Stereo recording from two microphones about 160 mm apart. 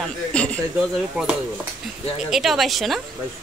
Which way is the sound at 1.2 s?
10° right (ahead or behind).